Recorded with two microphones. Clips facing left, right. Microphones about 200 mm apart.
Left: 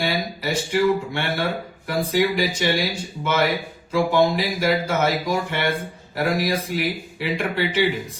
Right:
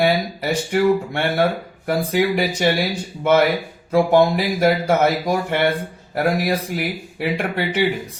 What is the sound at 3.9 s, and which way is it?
Speech, 60° right (ahead or behind).